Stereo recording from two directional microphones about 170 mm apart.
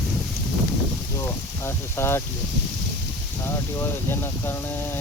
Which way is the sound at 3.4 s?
15° left (ahead or behind).